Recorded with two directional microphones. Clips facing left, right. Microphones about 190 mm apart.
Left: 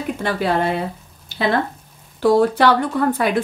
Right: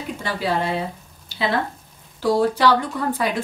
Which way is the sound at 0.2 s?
55° left (ahead or behind).